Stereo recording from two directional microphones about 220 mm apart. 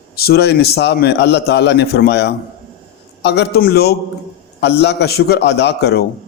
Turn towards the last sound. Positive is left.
turn(degrees=50)  # may be behind; listen again after turning